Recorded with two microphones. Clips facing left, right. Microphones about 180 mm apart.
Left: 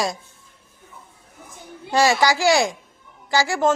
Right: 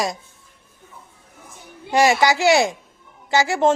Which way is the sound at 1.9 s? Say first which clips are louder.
Right 1 dB; 20° right (ahead or behind).